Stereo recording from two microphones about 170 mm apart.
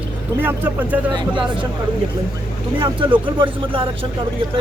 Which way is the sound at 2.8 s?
30° right (ahead or behind).